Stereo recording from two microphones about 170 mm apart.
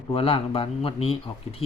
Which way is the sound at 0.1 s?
35° left (ahead or behind).